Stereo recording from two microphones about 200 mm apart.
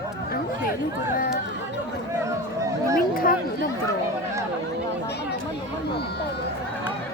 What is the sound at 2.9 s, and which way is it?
Chatter, 45° left (ahead or behind).